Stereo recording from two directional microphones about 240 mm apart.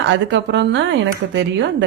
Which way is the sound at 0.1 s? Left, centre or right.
Right.